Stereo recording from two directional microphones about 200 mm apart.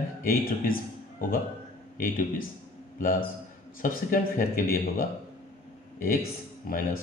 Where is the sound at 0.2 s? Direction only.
45° left (ahead or behind).